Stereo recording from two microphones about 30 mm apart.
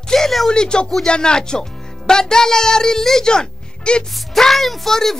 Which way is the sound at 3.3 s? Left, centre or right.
Left.